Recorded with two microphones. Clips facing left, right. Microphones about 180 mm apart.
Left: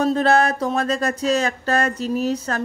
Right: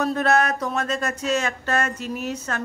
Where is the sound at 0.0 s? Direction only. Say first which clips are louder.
Left 3 dB; 30° left (ahead or behind).